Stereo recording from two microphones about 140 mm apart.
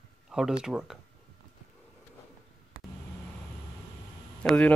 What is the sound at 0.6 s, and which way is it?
Speech, 5° right (ahead or behind).